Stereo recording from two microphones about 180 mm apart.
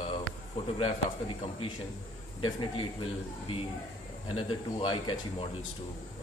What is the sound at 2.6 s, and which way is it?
Speech, 30° left (ahead or behind).